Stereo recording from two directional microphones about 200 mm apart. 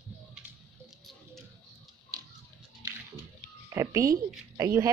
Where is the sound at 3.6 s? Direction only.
15° right (ahead or behind).